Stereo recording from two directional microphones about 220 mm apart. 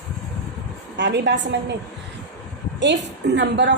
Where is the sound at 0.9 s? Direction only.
50° right (ahead or behind).